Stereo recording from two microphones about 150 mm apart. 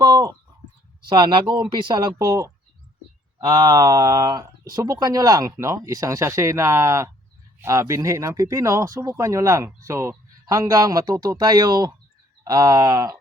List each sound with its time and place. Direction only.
0.0 s speech: 25° right (ahead or behind)